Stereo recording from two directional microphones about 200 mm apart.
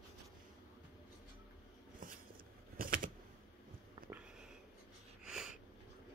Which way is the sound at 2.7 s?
45° right (ahead or behind).